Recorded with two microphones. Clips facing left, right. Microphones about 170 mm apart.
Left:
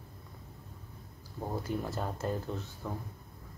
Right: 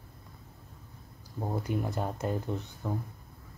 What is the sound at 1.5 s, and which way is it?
Speech, 15° right (ahead or behind).